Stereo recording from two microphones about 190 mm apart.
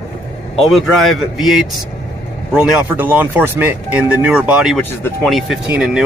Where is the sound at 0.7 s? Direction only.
Centre (ahead or behind).